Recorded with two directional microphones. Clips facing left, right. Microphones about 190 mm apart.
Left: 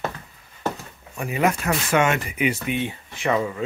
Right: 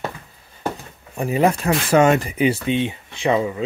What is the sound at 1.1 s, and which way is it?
Speech, 35° right (ahead or behind).